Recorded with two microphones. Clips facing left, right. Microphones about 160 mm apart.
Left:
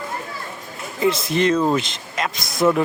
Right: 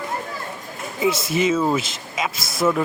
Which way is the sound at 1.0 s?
5° right (ahead or behind).